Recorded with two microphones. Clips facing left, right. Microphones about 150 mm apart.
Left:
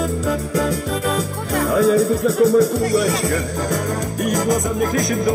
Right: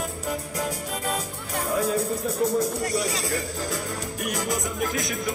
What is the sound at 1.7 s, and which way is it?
Music, 85° left.